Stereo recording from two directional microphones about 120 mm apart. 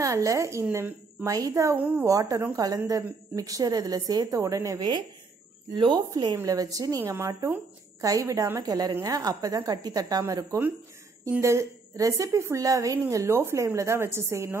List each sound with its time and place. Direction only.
0.0 s a woman's voice: 25° right (ahead or behind)